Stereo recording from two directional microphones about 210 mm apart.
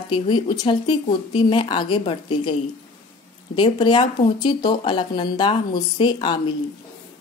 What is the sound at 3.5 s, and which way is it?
A woman's voice, 20° left (ahead or behind).